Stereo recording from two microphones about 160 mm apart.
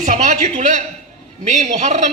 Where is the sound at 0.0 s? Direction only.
50° right (ahead or behind).